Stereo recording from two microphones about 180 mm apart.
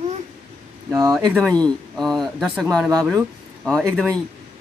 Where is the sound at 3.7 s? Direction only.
Centre (ahead or behind).